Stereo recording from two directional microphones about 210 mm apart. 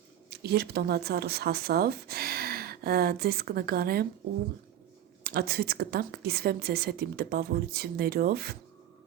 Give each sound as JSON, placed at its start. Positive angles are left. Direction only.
{"t": 0.3, "sound": "speech", "side_deg": -50}
{"t": 5.2, "sound": "a woman's voice", "side_deg": -50}